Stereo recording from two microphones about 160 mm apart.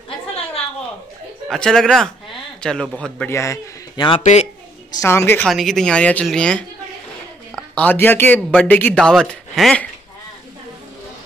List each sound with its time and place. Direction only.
1.5 s speech: 5° left (ahead or behind)
3.3 s a man's voice: 20° left (ahead or behind)
4.2 s speech: 45° left (ahead or behind)
4.9 s speech: 15° left (ahead or behind)
5.5 s speech: centre (ahead or behind)
7.7 s speech: 10° left (ahead or behind)